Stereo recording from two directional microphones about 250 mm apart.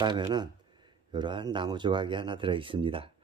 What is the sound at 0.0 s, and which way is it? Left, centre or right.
Speech, centre.